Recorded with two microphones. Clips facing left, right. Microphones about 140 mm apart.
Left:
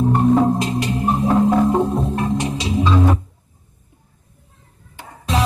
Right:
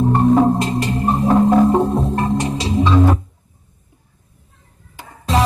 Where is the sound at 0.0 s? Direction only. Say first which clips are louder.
Right 2 dB; centre (ahead or behind).